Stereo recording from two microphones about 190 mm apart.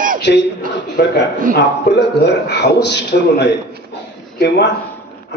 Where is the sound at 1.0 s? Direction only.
55° left (ahead or behind).